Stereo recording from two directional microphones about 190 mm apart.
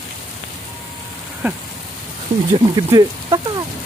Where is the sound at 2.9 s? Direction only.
20° right (ahead or behind).